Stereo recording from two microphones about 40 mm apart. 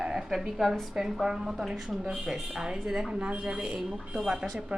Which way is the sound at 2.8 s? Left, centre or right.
Centre.